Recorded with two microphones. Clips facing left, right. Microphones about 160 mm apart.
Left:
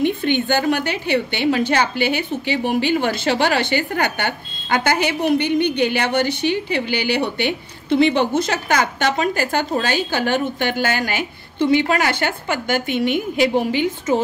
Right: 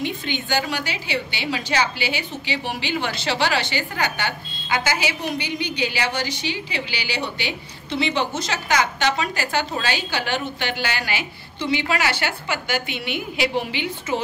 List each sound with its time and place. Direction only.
0.0 s a woman's voice: 55° left (ahead or behind)